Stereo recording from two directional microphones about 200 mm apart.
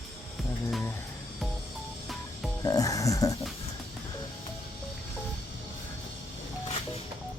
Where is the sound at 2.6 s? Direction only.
15° left (ahead or behind).